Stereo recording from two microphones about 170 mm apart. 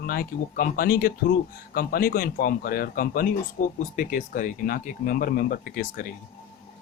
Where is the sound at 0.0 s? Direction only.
60° left (ahead or behind).